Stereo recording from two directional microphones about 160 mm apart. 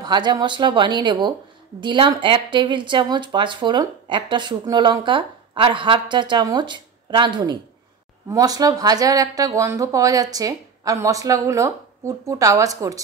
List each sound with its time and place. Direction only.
0.0 s speech: 30° right (ahead or behind)